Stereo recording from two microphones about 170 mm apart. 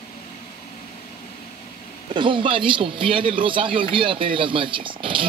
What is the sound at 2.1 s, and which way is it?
Speech, 30° right (ahead or behind).